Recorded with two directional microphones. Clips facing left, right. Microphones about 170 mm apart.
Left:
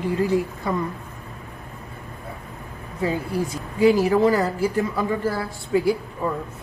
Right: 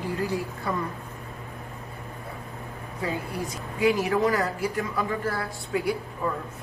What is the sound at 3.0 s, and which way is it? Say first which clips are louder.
A woman's voice: left 6 dB; 30° left (ahead or behind).